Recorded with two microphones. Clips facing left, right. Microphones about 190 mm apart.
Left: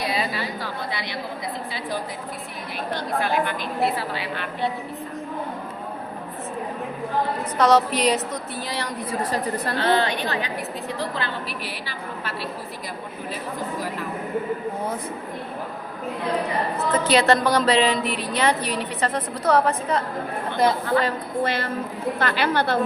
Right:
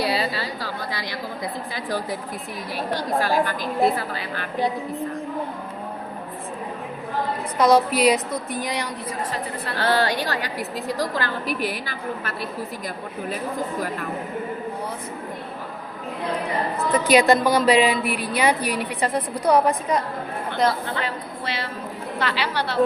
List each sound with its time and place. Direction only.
0.0 s a sound: 35° right (ahead or behind)
3.2 s a woman's voice: 35° right (ahead or behind)
7.6 s a woman's voice: 10° right (ahead or behind)
9.7 s a woman's voice: 40° right (ahead or behind)
16.9 s a woman's voice: 15° right (ahead or behind)
21.0 s a woman's voice: 50° left (ahead or behind)